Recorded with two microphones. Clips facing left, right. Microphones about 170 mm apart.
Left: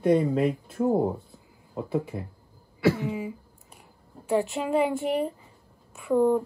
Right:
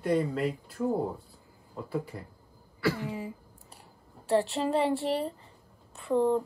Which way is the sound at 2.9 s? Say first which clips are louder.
Left 5 dB; centre (ahead or behind).